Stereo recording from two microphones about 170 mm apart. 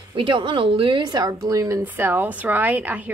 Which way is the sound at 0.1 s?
30° right (ahead or behind).